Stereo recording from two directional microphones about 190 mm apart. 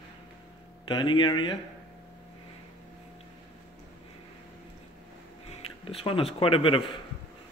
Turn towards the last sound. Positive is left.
turn(degrees=30)  # may be behind; listen again after turning